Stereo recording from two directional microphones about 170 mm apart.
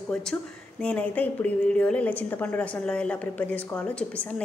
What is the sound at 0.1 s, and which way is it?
A woman's voice, 5° left (ahead or behind).